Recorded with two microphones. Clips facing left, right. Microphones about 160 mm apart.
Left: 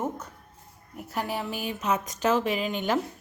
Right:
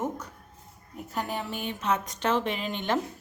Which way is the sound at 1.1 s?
5° left (ahead or behind).